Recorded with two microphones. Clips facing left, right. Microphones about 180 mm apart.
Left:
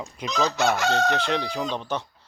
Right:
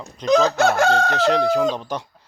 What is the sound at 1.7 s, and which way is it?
Speech, 10° right (ahead or behind).